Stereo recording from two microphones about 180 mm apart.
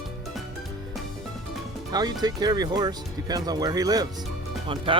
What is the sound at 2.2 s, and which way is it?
Speech, 20° right (ahead or behind).